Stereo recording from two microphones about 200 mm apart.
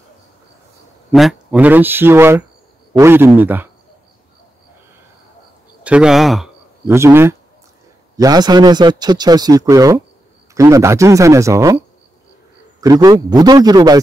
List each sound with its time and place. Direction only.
1.1 s a man's voice: 5° right (ahead or behind)
5.9 s speech: 5° right (ahead or behind)
6.9 s speech: 10° right (ahead or behind)
12.8 s speech: 20° right (ahead or behind)